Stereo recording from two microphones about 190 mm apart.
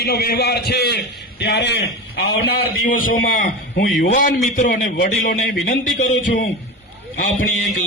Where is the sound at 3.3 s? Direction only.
45° left (ahead or behind).